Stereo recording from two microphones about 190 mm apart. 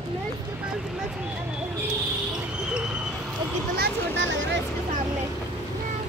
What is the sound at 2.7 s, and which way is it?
Vehicle, 5° right (ahead or behind).